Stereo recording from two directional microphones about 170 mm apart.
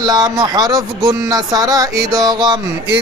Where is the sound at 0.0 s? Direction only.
20° right (ahead or behind).